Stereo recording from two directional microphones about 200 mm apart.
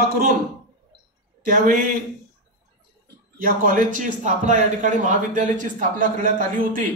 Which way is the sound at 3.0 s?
45° right (ahead or behind).